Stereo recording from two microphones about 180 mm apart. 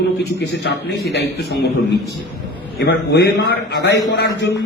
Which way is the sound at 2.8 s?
65° left (ahead or behind).